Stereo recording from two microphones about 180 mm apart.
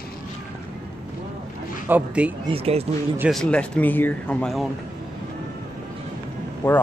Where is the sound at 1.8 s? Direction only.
10° right (ahead or behind).